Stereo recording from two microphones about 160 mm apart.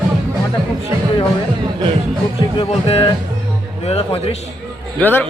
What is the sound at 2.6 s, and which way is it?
Speech, 40° left (ahead or behind).